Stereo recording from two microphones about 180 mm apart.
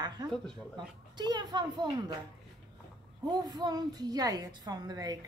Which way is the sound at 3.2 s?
25° right (ahead or behind).